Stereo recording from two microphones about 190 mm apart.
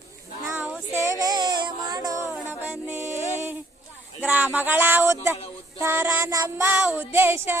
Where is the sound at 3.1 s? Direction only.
15° left (ahead or behind).